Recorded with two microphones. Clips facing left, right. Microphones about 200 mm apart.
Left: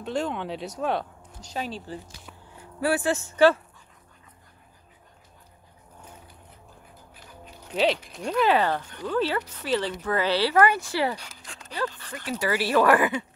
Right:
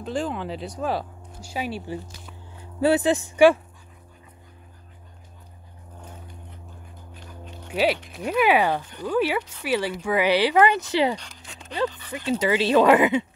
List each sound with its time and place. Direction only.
0.0 s speech: centre (ahead or behind)
7.7 s speech: 5° right (ahead or behind)
11.1 s dog: 5° left (ahead or behind)
12.1 s speech: 20° right (ahead or behind)